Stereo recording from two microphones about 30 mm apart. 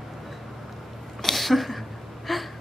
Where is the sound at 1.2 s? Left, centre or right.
Centre.